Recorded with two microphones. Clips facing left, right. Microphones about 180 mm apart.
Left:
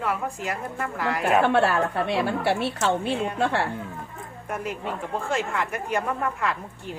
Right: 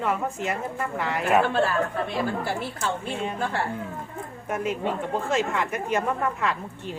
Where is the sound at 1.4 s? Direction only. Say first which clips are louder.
Left 3 dB; 70° left (ahead or behind).